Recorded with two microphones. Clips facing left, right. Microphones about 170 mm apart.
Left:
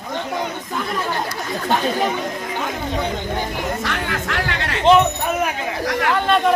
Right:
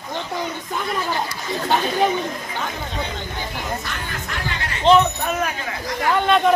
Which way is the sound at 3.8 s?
85° left.